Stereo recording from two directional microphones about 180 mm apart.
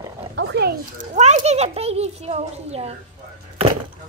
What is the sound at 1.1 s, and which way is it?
A child's voice, 40° right (ahead or behind).